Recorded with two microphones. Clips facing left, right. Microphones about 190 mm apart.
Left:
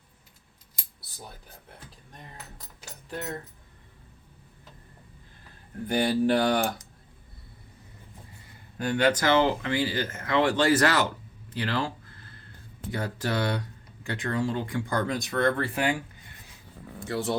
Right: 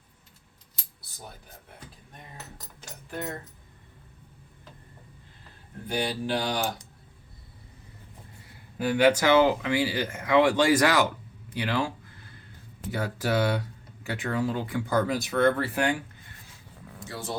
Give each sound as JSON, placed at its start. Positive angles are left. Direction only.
{"t": 5.9, "sound": "speech", "side_deg": 50}
{"t": 8.8, "sound": "speech", "side_deg": -5}
{"t": 17.1, "sound": "speech", "side_deg": 65}